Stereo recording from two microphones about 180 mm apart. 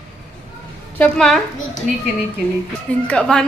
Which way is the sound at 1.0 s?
5° left (ahead or behind).